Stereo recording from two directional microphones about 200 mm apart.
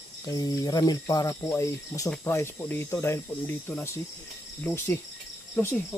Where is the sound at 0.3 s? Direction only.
20° left (ahead or behind).